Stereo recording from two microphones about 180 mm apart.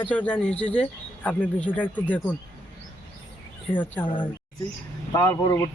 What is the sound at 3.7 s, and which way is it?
Speech, 10° left (ahead or behind).